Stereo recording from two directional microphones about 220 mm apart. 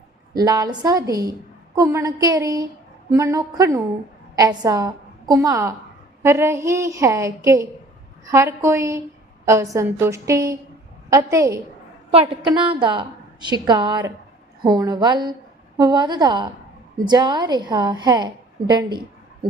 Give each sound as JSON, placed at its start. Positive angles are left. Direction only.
{"t": 0.3, "sound": "a woman's voice", "side_deg": -15}
{"t": 12.1, "sound": "a woman's voice", "side_deg": -25}